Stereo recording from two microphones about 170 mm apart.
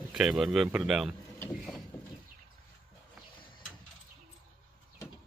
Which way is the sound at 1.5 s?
Centre (ahead or behind).